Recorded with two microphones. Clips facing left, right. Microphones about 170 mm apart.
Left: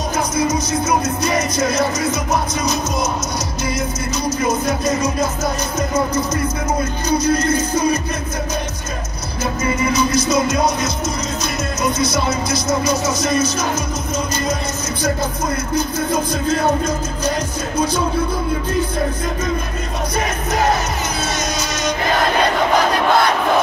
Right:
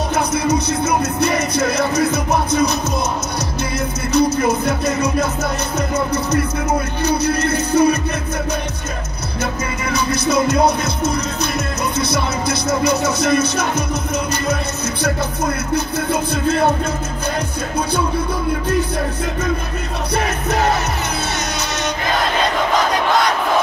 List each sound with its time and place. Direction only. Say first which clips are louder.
0.3 s music: right 1 dB; 65° right (ahead or behind)
4.1 s music: right 6 dB; 65° right (ahead or behind)
9.9 s music: right 3 dB; 60° right (ahead or behind)
15.7 s music: left 2 dB; 65° right (ahead or behind)